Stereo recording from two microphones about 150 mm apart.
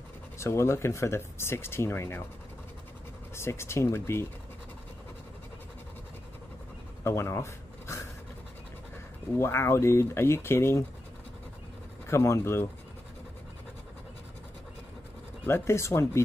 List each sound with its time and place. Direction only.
0.4 s speech: 15° left (ahead or behind)
3.3 s speech: 15° left (ahead or behind)
7.0 s a sound: 15° left (ahead or behind)
9.4 s speech: 15° left (ahead or behind)
12.1 s speech: 20° left (ahead or behind)
15.4 s speech: 15° left (ahead or behind)